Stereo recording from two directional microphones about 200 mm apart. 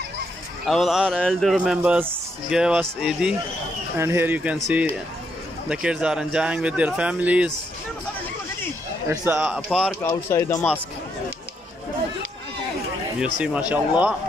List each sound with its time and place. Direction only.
0.7 s a man's voice: centre (ahead or behind)
5.7 s a man's voice: 5° right (ahead or behind)
9.1 s a man's voice: 10° right (ahead or behind)
10.0 s speech: 15° left (ahead or behind)
13.2 s speech: 5° right (ahead or behind)